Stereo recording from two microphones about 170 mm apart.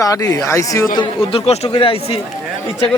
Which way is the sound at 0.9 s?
30° left (ahead or behind).